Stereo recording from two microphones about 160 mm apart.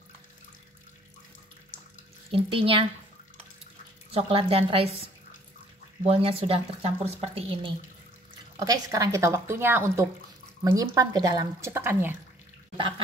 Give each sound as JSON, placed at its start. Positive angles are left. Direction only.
{"t": 2.3, "sound": "speech", "side_deg": -35}
{"t": 4.1, "sound": "speech", "side_deg": -35}
{"t": 6.0, "sound": "speech", "side_deg": -35}
{"t": 8.5, "sound": "speech", "side_deg": -20}